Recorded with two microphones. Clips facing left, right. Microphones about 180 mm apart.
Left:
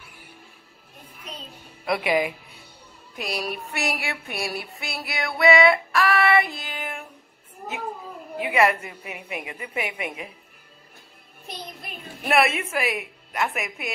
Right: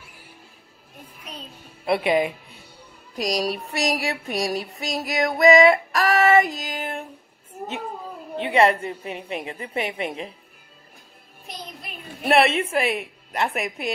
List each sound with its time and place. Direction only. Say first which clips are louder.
1.9 s a woman's voice: right 3 dB; 25° right (ahead or behind)
4.7 s child singing: right 7 dB; 40° right (ahead or behind)
8.5 s a woman's voice: right 3 dB; 30° right (ahead or behind)
12.3 s a woman's voice: right 3 dB; 30° right (ahead or behind)